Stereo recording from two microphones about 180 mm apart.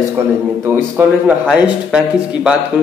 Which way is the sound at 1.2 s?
5° right (ahead or behind).